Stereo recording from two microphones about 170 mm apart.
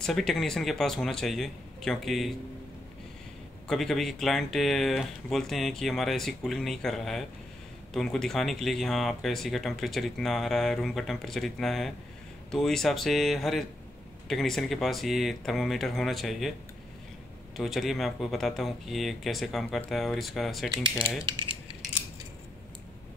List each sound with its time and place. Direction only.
0.0 s speech: centre (ahead or behind)
3.6 s speech: centre (ahead or behind)
17.6 s speech: centre (ahead or behind)
21.3 s mechanisms: 30° right (ahead or behind)